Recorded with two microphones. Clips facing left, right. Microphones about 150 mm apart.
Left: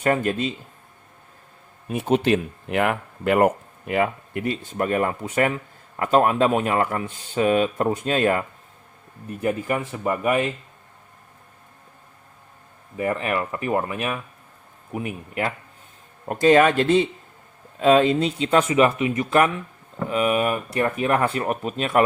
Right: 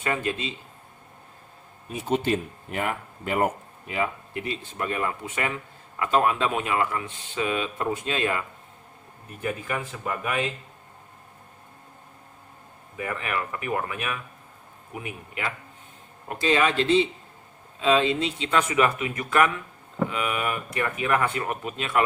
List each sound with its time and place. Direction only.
0.0 s a man's voice: 45° left (ahead or behind)
1.9 s speech: 60° left (ahead or behind); by 8.4 s 40° left (ahead or behind)
9.4 s speech: 30° left (ahead or behind)
13.0 s a man's voice: 30° left (ahead or behind)